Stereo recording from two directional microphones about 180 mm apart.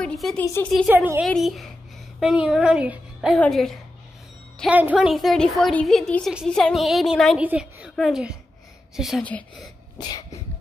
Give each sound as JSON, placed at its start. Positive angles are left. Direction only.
{"t": 0.0, "sound": "a woman's voice", "side_deg": 0}
{"t": 0.8, "sound": "a woman's voice", "side_deg": -10}
{"t": 1.2, "sound": "a woman's voice", "side_deg": 0}
{"t": 4.6, "sound": "a woman's voice", "side_deg": -10}
{"t": 7.4, "sound": "a sound", "side_deg": -5}
{"t": 7.9, "sound": "a woman's voice", "side_deg": 0}
{"t": 9.9, "sound": "cough", "side_deg": 20}